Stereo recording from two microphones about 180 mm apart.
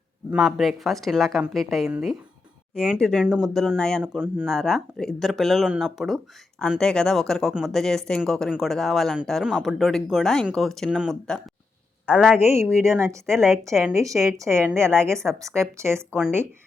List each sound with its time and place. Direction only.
0.3 s speech: centre (ahead or behind)
4.0 s a woman's voice: 10° right (ahead or behind)